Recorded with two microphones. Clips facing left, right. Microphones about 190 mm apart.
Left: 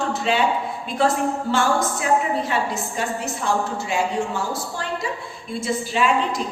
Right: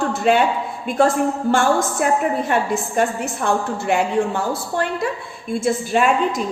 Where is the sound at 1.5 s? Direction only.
55° right (ahead or behind).